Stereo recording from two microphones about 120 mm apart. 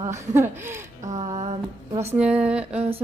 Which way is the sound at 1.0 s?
80° right.